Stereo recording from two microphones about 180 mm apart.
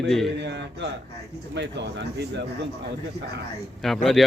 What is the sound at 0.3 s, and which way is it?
Speech, 75° right (ahead or behind).